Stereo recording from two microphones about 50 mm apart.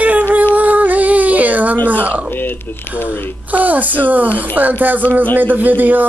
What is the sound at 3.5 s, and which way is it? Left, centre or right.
Speech, right.